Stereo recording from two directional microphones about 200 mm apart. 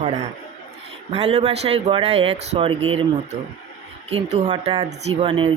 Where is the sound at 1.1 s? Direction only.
30° right (ahead or behind).